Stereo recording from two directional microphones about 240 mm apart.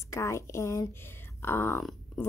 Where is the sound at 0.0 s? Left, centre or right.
Centre.